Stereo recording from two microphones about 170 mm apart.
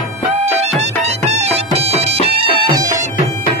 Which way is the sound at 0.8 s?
40° right (ahead or behind).